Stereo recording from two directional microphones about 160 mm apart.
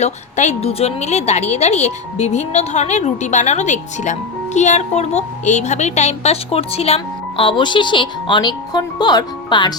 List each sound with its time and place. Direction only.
0.0 s a woman's voice: 45° left (ahead or behind); by 9.7 s 25° left (ahead or behind)